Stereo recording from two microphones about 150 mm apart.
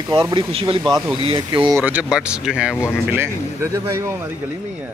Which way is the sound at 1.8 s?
10° right (ahead or behind).